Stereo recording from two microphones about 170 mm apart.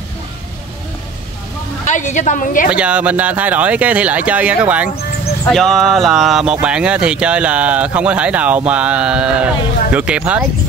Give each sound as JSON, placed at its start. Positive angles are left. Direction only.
{"t": 1.9, "sound": "a woman's voice", "side_deg": 45}
{"t": 2.7, "sound": "speech", "side_deg": -5}